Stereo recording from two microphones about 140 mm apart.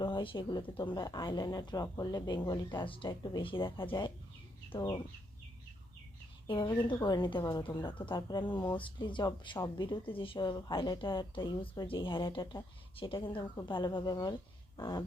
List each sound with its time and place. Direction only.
0.0 s a woman's voice: 35° left (ahead or behind)
6.5 s a woman's voice: 35° left (ahead or behind)
14.8 s a sound: 30° left (ahead or behind)